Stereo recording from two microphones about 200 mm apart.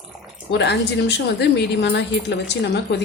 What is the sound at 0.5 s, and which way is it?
Speech, 60° left (ahead or behind).